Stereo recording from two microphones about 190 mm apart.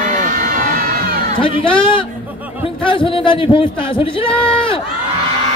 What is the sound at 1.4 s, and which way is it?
A man's voice, 25° left (ahead or behind).